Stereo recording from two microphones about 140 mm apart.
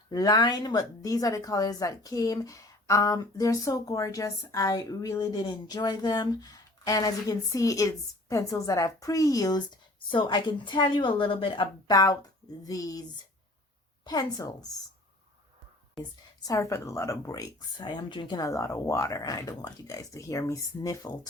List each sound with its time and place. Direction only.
0.1 s a woman's voice: 25° left (ahead or behind)
16.5 s a woman's voice: 20° left (ahead or behind)